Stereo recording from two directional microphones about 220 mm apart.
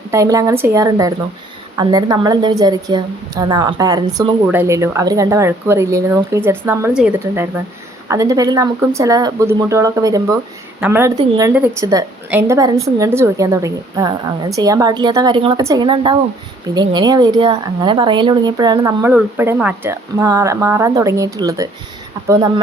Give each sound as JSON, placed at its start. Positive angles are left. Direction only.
{"t": 0.1, "sound": "a woman's voice", "side_deg": -15}